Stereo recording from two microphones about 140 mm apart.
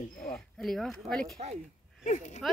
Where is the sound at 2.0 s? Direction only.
60° left (ahead or behind).